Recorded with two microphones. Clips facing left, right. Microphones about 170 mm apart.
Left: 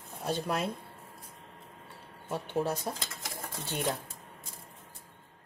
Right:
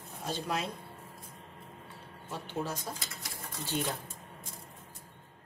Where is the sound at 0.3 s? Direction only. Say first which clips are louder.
Left 3 dB; 55° left (ahead or behind).